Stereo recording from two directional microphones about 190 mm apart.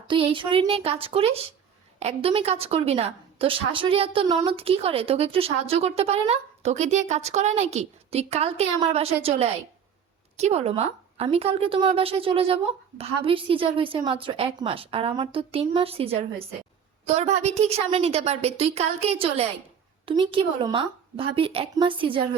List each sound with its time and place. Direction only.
0.1 s a woman's voice: 25° right (ahead or behind)